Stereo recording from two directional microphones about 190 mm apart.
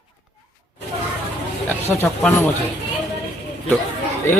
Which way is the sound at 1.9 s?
10° left (ahead or behind).